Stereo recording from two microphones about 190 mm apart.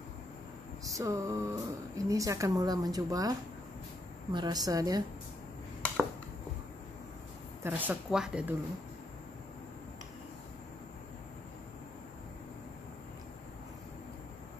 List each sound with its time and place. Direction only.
0.8 s a woman's voice: 15° right (ahead or behind)
7.6 s speech: 10° right (ahead or behind)